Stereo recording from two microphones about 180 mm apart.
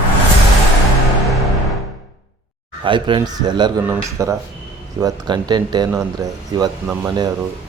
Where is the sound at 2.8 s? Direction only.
25° right (ahead or behind).